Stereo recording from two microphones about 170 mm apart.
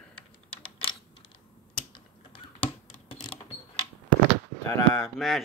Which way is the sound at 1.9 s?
30° left (ahead or behind).